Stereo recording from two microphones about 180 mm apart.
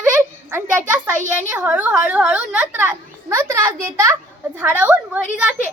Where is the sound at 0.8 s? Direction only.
45° right (ahead or behind).